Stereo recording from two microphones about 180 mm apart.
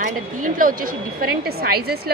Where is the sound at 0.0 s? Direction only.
50° right (ahead or behind).